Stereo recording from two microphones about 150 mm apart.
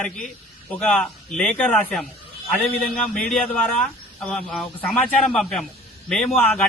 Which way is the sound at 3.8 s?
5° left (ahead or behind).